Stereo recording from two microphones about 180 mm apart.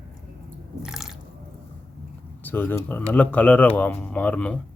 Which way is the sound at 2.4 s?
10° left (ahead or behind).